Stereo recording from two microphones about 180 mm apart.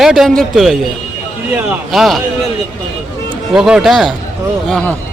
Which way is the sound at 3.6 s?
5° right (ahead or behind).